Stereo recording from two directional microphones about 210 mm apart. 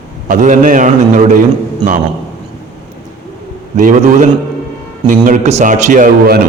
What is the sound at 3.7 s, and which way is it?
A man's voice, 35° right (ahead or behind).